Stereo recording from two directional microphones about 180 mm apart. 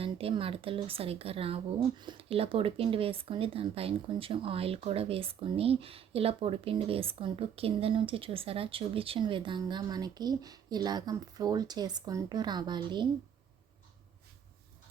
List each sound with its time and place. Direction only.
0.0 s a woman's voice: 30° right (ahead or behind)